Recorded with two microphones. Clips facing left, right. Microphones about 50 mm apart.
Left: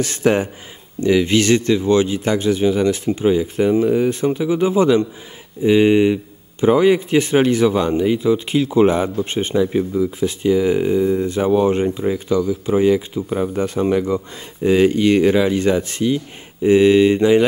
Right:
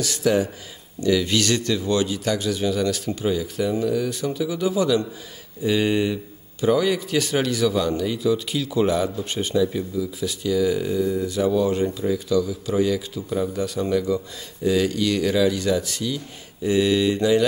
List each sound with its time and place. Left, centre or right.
0.0 s a man's voice: left